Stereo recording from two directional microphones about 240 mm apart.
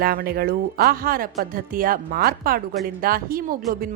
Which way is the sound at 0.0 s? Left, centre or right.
Right.